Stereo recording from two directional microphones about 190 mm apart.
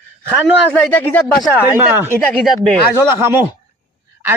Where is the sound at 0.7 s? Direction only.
10° left (ahead or behind).